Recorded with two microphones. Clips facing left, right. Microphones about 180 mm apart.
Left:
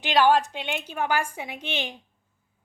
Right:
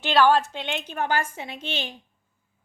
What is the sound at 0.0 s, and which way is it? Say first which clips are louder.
A woman's voice: right 1 dB; 15° left (ahead or behind).